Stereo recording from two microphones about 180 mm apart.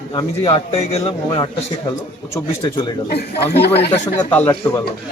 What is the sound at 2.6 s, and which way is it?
Speech, 25° left (ahead or behind).